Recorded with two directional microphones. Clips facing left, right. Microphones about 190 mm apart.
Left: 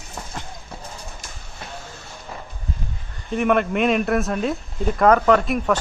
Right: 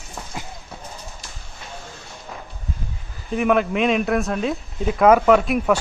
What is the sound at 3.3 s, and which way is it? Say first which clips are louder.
Speech: even; centre (ahead or behind).